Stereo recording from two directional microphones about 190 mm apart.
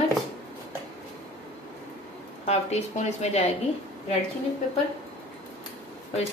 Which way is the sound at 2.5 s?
35° left (ahead or behind).